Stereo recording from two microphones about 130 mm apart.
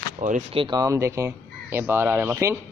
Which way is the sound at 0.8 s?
25° right (ahead or behind).